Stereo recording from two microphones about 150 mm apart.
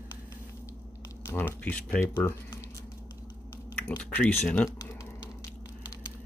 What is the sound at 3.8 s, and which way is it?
Speech, 10° left (ahead or behind).